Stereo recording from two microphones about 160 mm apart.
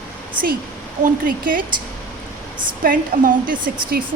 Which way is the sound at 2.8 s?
60° right (ahead or behind).